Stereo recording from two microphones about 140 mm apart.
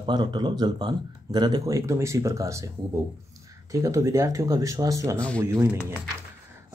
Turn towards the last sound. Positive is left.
turn(degrees=15)  # may be behind; listen again after turning